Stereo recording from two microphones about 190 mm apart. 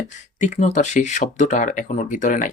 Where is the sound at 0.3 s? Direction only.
40° left (ahead or behind).